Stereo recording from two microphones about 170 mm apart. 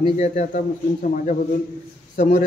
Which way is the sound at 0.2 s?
45° left (ahead or behind).